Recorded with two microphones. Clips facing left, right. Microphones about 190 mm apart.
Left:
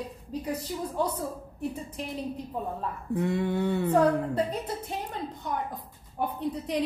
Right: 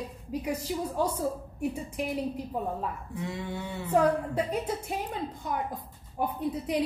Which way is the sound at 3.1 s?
55° left (ahead or behind).